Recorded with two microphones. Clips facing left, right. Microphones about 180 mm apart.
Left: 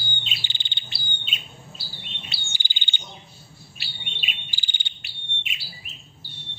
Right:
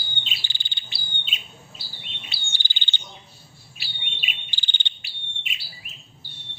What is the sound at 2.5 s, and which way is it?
Bird, 15° left (ahead or behind).